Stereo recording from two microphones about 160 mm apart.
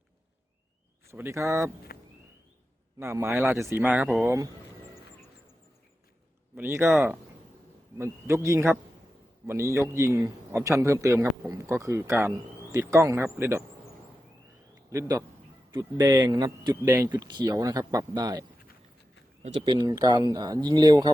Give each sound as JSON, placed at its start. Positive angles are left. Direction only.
{"t": 1.0, "sound": "a man's voice", "side_deg": -15}
{"t": 3.0, "sound": "a man's voice", "side_deg": -15}
{"t": 6.6, "sound": "a man's voice", "side_deg": -15}
{"t": 7.9, "sound": "a man's voice", "side_deg": -15}
{"t": 14.8, "sound": "a man's voice", "side_deg": -20}
{"t": 19.6, "sound": "a man's voice", "side_deg": -30}